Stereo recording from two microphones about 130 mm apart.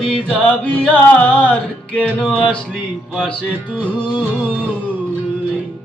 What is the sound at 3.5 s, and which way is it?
Music, 10° right (ahead or behind).